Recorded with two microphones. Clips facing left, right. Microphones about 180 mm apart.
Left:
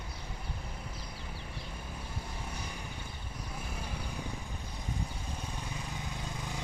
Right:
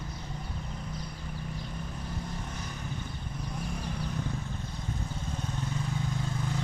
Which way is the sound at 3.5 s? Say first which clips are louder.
Right 5 dB; 5° left (ahead or behind).